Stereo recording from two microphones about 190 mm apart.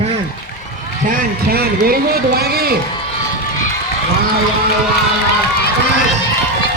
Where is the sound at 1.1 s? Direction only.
55° right (ahead or behind).